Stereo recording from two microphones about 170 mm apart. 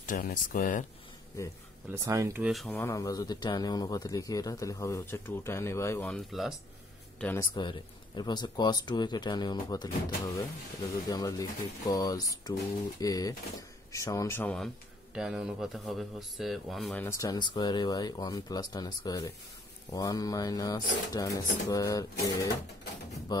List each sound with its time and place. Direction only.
0.0 s speech: 55° left (ahead or behind)
1.9 s speech: 20° right (ahead or behind)
2.4 s speech: centre (ahead or behind)
2.7 s speech: 15° left (ahead or behind)
6.0 s speech: centre (ahead or behind)
7.3 s speech: 25° left (ahead or behind); by 14.7 s 5° left (ahead or behind)
15.1 s speech: 5° right (ahead or behind)
17.0 s speech: 20° left (ahead or behind)